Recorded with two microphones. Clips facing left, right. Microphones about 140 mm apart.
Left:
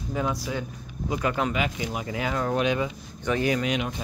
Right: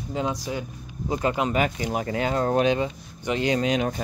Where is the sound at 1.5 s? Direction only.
45° right (ahead or behind).